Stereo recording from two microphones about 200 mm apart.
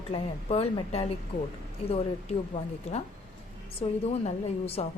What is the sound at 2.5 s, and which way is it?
A woman's voice, 30° left (ahead or behind).